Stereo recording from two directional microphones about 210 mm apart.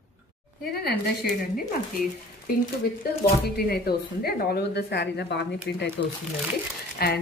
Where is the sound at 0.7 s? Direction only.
45° left (ahead or behind).